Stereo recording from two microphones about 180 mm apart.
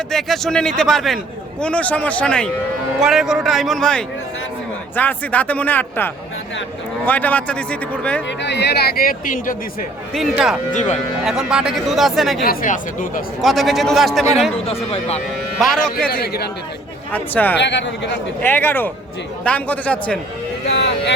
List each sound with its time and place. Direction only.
0.1 s a man's voice: centre (ahead or behind)
8.4 s speech: 70° left (ahead or behind); by 9.6 s 50° left (ahead or behind)
10.2 s speech: centre (ahead or behind)
10.7 s speech: 40° left (ahead or behind)
11.3 s speech: centre (ahead or behind)
12.5 s speech: 45° left (ahead or behind)
13.4 s speech: centre (ahead or behind)
14.7 s speech: 35° left (ahead or behind)
15.5 s speech: centre (ahead or behind)
16.2 s speech: 60° left (ahead or behind)
17.1 s a man's voice: 10° left (ahead or behind)
17.6 s speech: 80° left
18.4 s a man's voice: 10° left (ahead or behind)
20.7 s vehicle: 75° left (ahead or behind)